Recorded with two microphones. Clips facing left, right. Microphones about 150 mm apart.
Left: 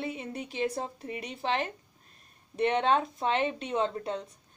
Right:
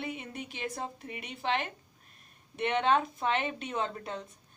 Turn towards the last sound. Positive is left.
turn(degrees=30)  # may be behind; listen again after turning